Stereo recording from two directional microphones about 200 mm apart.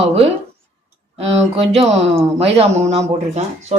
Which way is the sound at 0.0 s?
30° right (ahead or behind).